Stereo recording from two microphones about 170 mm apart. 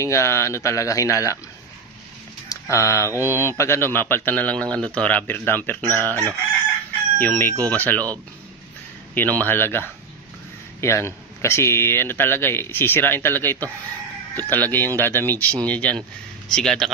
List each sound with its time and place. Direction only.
0.0 s speech: 15° left (ahead or behind)
2.5 s speech: 15° left (ahead or behind)
5.8 s speech: 20° right (ahead or behind)
7.2 s speech: 10° left (ahead or behind)
9.1 s speech: 10° left (ahead or behind)